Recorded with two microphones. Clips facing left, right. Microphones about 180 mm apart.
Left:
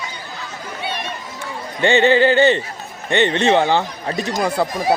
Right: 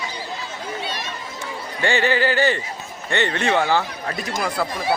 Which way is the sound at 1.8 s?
25° left (ahead or behind).